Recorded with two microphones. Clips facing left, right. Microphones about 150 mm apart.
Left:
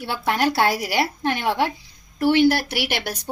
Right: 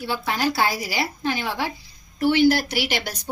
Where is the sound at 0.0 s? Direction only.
60° left (ahead or behind).